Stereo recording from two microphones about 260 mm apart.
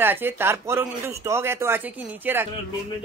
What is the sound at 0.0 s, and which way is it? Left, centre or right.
Speech, centre.